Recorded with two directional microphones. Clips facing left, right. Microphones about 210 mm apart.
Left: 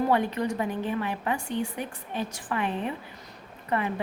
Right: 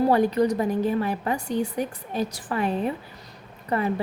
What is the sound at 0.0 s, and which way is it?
A woman's voice, 40° right (ahead or behind).